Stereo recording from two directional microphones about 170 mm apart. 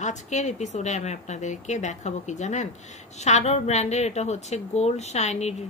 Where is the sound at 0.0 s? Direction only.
45° left (ahead or behind).